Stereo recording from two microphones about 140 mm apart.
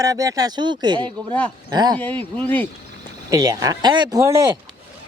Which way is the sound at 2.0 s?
10° left (ahead or behind).